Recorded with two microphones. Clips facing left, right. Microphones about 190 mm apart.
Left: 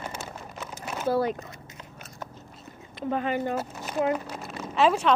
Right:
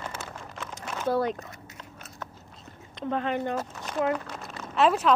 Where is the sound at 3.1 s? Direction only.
5° left (ahead or behind).